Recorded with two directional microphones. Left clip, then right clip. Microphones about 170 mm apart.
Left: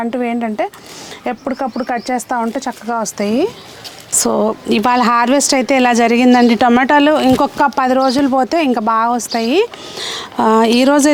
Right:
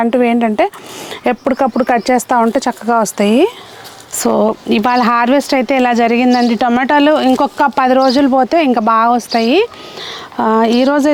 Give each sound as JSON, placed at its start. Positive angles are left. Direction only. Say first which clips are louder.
{"t": 0.0, "sound": "speech", "louder": "right 6 dB", "side_deg": -40}
{"t": 4.2, "sound": "speech", "louder": "right 3 dB", "side_deg": -15}
{"t": 6.8, "sound": "speech", "louder": "right 1 dB", "side_deg": -10}
{"t": 10.0, "sound": "speech", "louder": "left 1 dB", "side_deg": 0}